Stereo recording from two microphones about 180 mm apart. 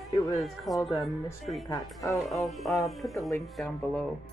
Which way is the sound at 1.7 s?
20° left (ahead or behind).